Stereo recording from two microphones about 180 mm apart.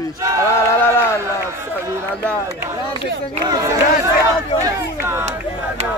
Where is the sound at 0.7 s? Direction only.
10° left (ahead or behind).